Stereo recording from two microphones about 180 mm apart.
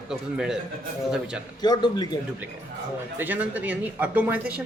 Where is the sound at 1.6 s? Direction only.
25° left (ahead or behind).